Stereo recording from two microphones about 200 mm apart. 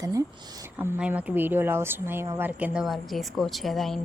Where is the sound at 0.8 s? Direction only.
10° right (ahead or behind).